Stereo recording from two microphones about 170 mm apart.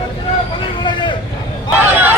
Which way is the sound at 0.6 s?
30° left (ahead or behind).